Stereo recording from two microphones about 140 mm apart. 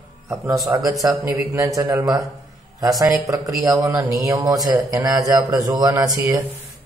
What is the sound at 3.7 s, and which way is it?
A man's voice, 25° right (ahead or behind).